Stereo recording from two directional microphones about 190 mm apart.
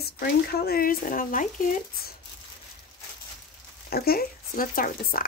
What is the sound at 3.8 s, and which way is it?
Speech, 55° left (ahead or behind).